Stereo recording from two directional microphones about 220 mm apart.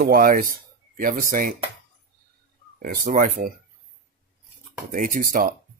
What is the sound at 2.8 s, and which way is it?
Speech, 40° right (ahead or behind).